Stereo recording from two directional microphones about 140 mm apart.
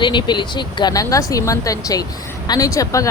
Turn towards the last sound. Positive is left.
turn(degrees=25)  # may be behind; listen again after turning